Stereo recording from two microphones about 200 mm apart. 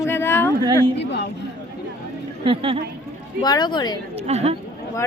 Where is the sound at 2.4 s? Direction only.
30° right (ahead or behind).